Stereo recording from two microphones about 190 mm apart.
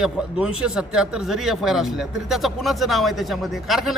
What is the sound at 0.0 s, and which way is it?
Speech, 5° right (ahead or behind).